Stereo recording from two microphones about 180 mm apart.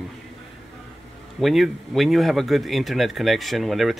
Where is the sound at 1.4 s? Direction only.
Centre (ahead or behind).